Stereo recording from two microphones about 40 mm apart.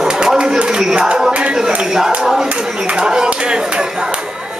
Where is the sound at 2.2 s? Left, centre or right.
Centre.